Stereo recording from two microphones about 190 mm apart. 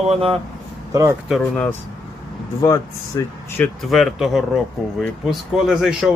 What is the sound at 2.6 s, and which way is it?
Speech, 15° left (ahead or behind).